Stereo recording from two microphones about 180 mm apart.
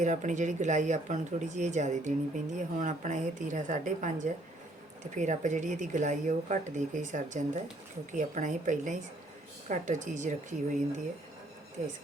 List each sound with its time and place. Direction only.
0.0 s speech: 40° right (ahead or behind)
11.8 s speech: 45° right (ahead or behind)